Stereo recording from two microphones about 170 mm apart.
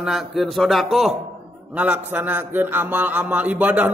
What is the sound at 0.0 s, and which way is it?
A man's voice, centre (ahead or behind).